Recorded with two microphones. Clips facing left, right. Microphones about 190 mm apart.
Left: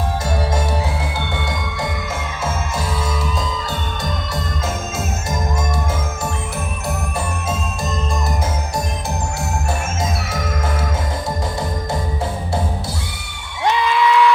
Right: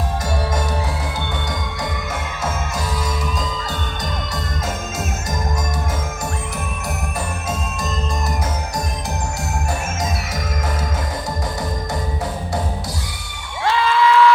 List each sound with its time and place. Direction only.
13.7 s cheering: 20° left (ahead or behind)